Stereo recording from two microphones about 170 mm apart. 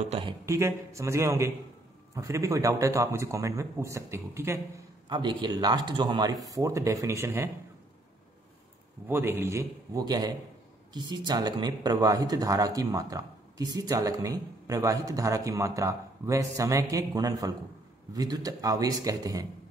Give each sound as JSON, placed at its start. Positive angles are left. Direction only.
{"t": 0.0, "sound": "speech", "side_deg": -35}
{"t": 0.5, "sound": "a man's voice", "side_deg": -15}
{"t": 5.0, "sound": "speech", "side_deg": -25}
{"t": 9.0, "sound": "a man's voice", "side_deg": -15}